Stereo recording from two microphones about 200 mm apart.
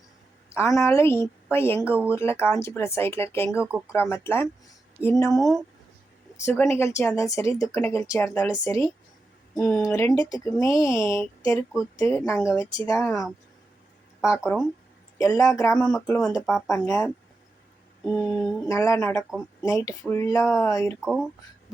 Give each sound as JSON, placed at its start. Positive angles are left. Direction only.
{"t": 0.5, "sound": "speech", "side_deg": 15}
{"t": 14.2, "sound": "speech", "side_deg": 15}
{"t": 15.8, "sound": "speech", "side_deg": 0}
{"t": 18.0, "sound": "a sound", "side_deg": 0}
{"t": 18.7, "sound": "speech", "side_deg": 15}